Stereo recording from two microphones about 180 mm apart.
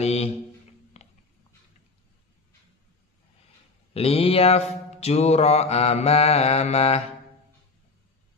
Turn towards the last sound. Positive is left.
turn(degrees=35)  # may be behind; listen again after turning